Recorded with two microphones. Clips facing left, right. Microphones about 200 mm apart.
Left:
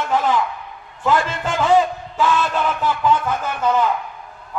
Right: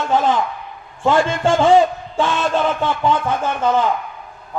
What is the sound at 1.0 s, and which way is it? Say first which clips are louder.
A man's voice: right 4 dB; 30° right (ahead or behind).